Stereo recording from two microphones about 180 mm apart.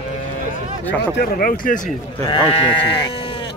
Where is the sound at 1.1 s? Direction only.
55° left (ahead or behind).